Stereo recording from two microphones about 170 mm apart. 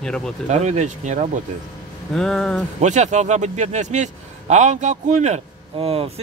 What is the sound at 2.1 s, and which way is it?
Speech, 5° left (ahead or behind).